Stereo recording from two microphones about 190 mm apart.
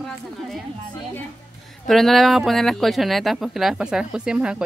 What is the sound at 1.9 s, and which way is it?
Speech, centre (ahead or behind).